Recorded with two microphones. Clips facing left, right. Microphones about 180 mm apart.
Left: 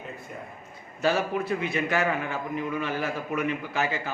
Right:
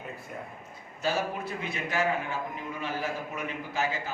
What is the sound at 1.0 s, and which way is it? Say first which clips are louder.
A man's voice: left 5 dB; 70° left (ahead or behind).